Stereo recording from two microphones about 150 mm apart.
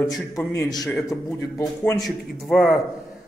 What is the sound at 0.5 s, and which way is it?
Speech, 25° left (ahead or behind).